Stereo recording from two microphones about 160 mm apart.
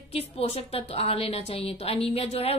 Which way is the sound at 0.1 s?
40° left (ahead or behind).